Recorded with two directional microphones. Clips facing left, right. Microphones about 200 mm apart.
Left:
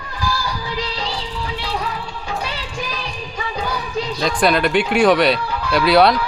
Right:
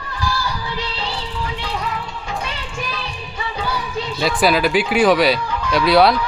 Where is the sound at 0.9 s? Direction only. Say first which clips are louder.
Left 1 dB; 10° left (ahead or behind).